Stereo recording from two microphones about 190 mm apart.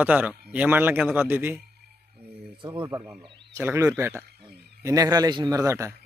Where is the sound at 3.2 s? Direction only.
15° right (ahead or behind).